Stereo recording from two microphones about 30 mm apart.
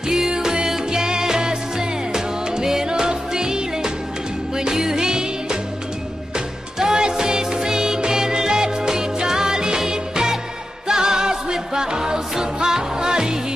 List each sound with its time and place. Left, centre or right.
0.1 s music: right